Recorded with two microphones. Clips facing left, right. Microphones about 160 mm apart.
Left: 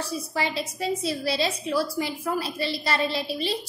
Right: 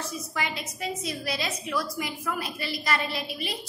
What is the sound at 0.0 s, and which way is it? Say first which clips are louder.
A woman's voice: left 4 dB; 30° left (ahead or behind).